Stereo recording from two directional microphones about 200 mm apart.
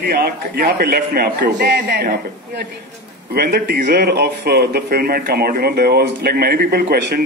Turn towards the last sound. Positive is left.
turn(degrees=-50)  # may be behind; listen again after turning